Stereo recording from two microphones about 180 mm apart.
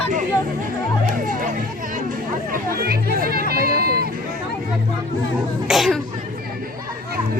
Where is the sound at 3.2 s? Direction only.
55° right (ahead or behind).